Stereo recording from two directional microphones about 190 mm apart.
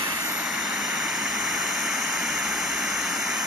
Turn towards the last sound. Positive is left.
turn(degrees=0)  # may be behind; listen again after turning